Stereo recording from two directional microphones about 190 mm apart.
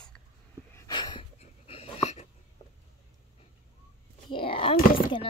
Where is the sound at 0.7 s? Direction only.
20° left (ahead or behind).